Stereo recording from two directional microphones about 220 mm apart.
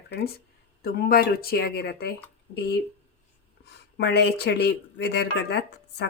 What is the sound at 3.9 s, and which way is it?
Speech, 50° left (ahead or behind).